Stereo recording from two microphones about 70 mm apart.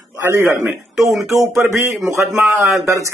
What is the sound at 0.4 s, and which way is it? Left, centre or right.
Speech, right.